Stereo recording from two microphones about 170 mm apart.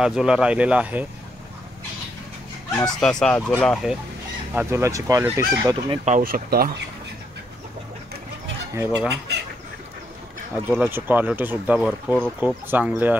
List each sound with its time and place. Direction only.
0.0 s fowl: 5° right (ahead or behind)
2.9 s speech: 5° left (ahead or behind)
4.6 s fowl: 15° right (ahead or behind)
6.0 s speech: 50° right (ahead or behind)
8.7 s fowl: 10° right (ahead or behind)
10.7 s fowl: 10° right (ahead or behind)